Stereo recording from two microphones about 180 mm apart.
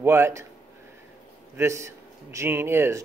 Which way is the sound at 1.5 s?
15° right (ahead or behind).